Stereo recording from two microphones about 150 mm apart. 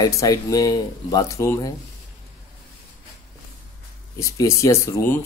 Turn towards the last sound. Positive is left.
turn(degrees=15)  # may be behind; listen again after turning